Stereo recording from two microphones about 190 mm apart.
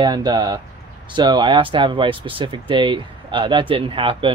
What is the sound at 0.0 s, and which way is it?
Speech, 20° right (ahead or behind).